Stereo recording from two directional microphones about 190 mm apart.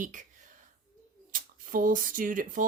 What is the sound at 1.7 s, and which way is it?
Speech, 45° right (ahead or behind).